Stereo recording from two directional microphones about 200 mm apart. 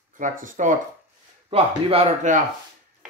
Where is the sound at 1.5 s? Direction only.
30° right (ahead or behind).